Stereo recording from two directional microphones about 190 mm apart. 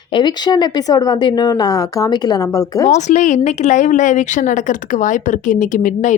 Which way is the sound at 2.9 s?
35° left (ahead or behind).